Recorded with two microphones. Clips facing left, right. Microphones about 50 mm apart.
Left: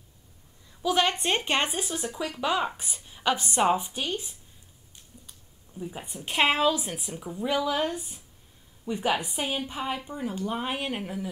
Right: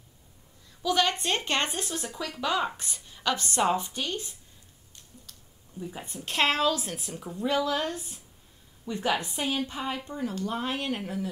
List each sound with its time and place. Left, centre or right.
0.8 s a woman's voice: centre
5.8 s a woman's voice: centre